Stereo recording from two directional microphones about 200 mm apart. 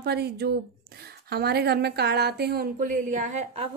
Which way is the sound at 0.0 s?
55° right (ahead or behind).